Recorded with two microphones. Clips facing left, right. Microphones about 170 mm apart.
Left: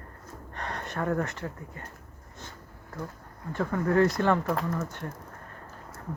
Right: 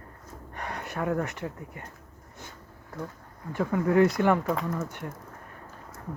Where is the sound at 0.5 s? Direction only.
10° right (ahead or behind).